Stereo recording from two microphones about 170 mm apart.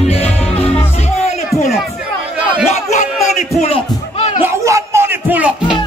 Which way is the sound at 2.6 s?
40° left (ahead or behind).